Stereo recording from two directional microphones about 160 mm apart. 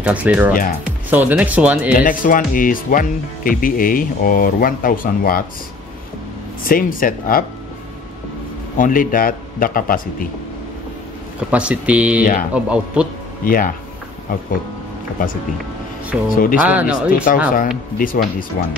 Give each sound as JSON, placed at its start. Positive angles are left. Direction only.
{"t": 0.0, "sound": "speech", "side_deg": -10}
{"t": 0.5, "sound": "speech", "side_deg": 60}
{"t": 0.8, "sound": "speech", "side_deg": -10}
{"t": 2.0, "sound": "speech", "side_deg": 55}
{"t": 6.6, "sound": "speech", "side_deg": 60}
{"t": 8.7, "sound": "speech", "side_deg": 55}
{"t": 11.5, "sound": "speech", "side_deg": -10}
{"t": 12.2, "sound": "speech", "side_deg": 60}
{"t": 12.5, "sound": "speech", "side_deg": -5}
{"t": 13.4, "sound": "speech", "side_deg": 60}
{"t": 15.2, "sound": "speech", "side_deg": 60}
{"t": 16.1, "sound": "speech", "side_deg": 0}
{"t": 17.1, "sound": "speech", "side_deg": 60}